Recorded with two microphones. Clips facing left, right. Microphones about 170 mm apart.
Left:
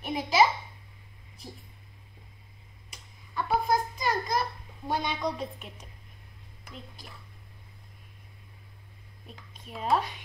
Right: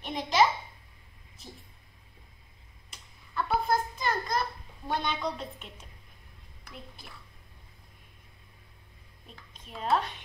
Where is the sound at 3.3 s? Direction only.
15° left (ahead or behind).